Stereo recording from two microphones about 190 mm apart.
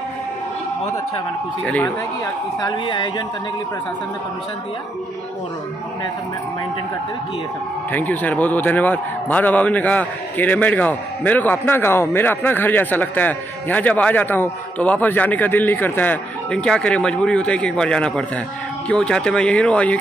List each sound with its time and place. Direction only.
1.6 s speech: 5° left (ahead or behind)
2.6 s speech: 25° left (ahead or behind)
7.9 s a man's voice: 10° left (ahead or behind)